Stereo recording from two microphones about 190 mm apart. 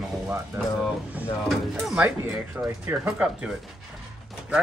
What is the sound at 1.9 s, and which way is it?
Speech, 5° right (ahead or behind).